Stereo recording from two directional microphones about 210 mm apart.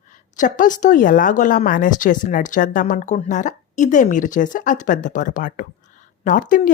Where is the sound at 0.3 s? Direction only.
35° left (ahead or behind).